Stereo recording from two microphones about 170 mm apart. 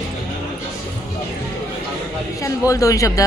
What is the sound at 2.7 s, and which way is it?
Speech, 20° left (ahead or behind).